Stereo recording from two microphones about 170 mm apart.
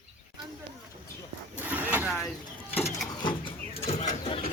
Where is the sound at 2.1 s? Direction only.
Centre (ahead or behind).